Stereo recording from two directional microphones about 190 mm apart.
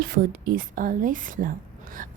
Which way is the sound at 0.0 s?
45° right (ahead or behind).